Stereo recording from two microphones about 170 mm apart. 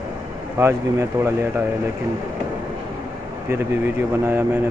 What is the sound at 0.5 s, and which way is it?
Speech, 15° right (ahead or behind).